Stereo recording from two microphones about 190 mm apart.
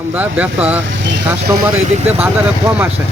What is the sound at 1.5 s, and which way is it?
Speech, 20° right (ahead or behind).